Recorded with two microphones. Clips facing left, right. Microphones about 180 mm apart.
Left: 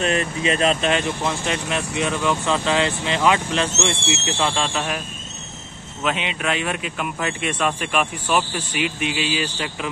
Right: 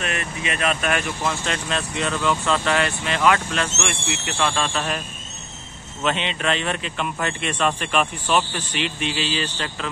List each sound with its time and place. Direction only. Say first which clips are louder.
0.0 s speech: left 6 dB; 30° left (ahead or behind)
6.0 s speech: right 1 dB; 5° left (ahead or behind)